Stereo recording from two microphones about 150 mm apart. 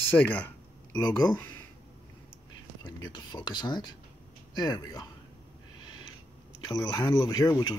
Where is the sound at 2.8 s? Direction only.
30° left (ahead or behind).